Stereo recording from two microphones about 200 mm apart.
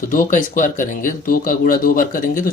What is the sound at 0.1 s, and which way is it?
Speech, 45° left (ahead or behind).